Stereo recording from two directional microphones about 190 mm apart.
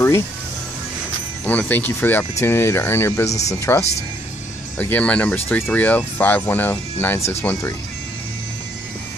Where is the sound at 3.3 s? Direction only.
35° left (ahead or behind).